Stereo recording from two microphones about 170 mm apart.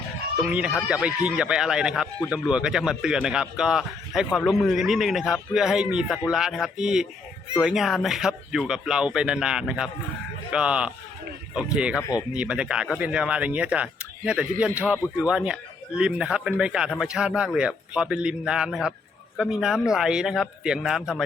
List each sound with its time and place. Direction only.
0.3 s speech: 5° right (ahead or behind)
11.9 s speech: 20° left (ahead or behind)
12.3 s speech: 5° right (ahead or behind)